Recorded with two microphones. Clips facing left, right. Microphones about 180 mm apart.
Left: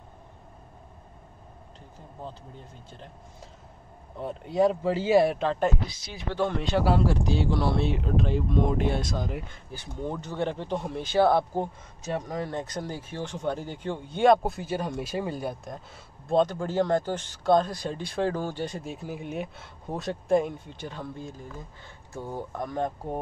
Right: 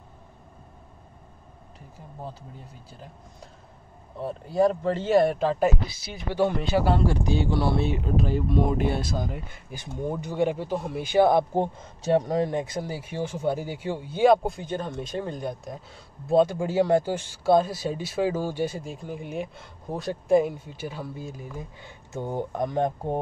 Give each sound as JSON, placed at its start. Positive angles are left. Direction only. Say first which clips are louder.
{"t": 2.2, "sound": "speech", "louder": "right 1 dB", "side_deg": -5}
{"t": 4.2, "sound": "speech", "louder": "right 1 dB", "side_deg": 0}
{"t": 11.5, "sound": "speech", "louder": "right 4 dB", "side_deg": -30}
{"t": 12.4, "sound": "speech", "louder": "right 4 dB", "side_deg": -10}
{"t": 16.3, "sound": "speech", "louder": "right 3 dB", "side_deg": -10}
{"t": 18.8, "sound": "speech", "louder": "right 1 dB", "side_deg": 5}